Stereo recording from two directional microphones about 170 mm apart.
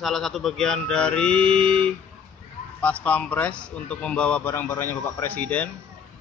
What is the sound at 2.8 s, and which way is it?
Speech, 10° left (ahead or behind).